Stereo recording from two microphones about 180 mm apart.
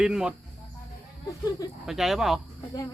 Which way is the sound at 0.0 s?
5° right (ahead or behind).